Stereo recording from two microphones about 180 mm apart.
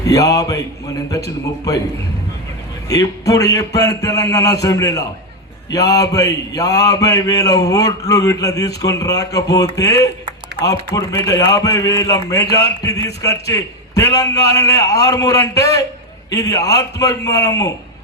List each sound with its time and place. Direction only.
0.0 s speech: 20° left (ahead or behind)
1.7 s speech: 20° left (ahead or behind)
2.9 s a man's voice: 20° left (ahead or behind)